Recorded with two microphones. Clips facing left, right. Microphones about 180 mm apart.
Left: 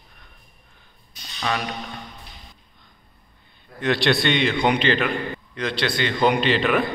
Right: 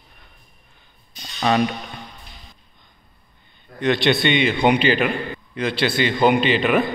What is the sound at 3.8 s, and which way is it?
A man's voice, centre (ahead or behind).